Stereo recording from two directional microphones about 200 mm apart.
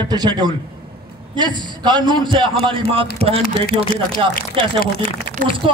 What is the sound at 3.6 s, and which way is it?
Speech, 45° left (ahead or behind).